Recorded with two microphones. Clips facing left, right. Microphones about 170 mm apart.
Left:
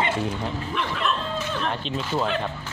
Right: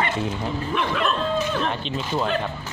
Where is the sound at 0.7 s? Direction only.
60° right (ahead or behind).